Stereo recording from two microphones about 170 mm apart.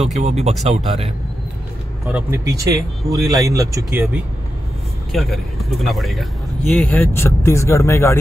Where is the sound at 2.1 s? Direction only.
15° right (ahead or behind).